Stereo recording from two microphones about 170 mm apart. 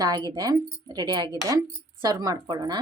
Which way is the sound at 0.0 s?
25° right (ahead or behind).